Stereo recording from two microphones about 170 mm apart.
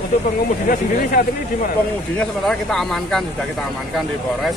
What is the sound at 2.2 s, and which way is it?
Speech, 5° left (ahead or behind).